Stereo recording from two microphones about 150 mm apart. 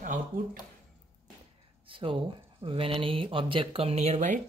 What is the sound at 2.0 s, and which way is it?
Speech, 35° right (ahead or behind).